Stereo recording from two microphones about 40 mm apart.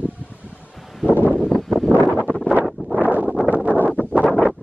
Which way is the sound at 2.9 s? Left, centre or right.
Right.